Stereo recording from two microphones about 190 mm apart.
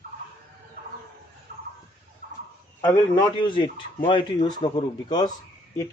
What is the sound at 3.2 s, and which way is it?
Speech, 25° left (ahead or behind).